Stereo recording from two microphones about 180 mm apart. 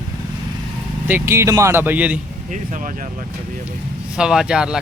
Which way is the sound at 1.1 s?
10° right (ahead or behind).